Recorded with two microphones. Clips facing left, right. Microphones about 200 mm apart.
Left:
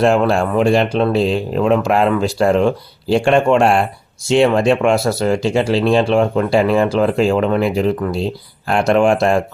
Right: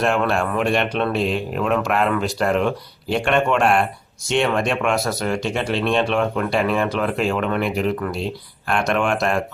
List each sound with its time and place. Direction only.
0.0 s speech: 30° left (ahead or behind)